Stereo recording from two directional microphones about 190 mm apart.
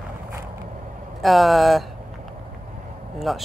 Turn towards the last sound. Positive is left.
turn(degrees=0)  # may be behind; listen again after turning